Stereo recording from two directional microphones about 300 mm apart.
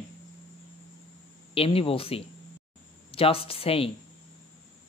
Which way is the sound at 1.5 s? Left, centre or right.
Centre.